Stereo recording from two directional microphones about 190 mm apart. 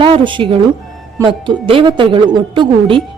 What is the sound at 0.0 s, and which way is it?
A woman's voice, 25° right (ahead or behind).